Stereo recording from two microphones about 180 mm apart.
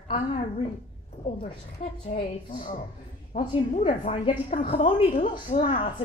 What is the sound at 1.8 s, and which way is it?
A woman's voice, 45° left (ahead or behind).